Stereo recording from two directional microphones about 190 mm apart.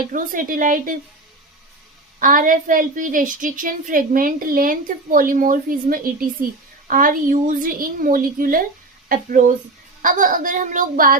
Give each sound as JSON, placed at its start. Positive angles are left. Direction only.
{"t": 0.1, "sound": "a woman's voice", "side_deg": -45}
{"t": 2.1, "sound": "a woman's voice", "side_deg": -45}